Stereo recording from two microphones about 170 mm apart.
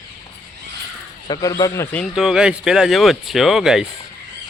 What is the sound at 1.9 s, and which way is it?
Speech, centre (ahead or behind).